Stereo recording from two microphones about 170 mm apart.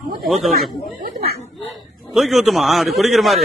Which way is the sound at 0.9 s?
55° right (ahead or behind).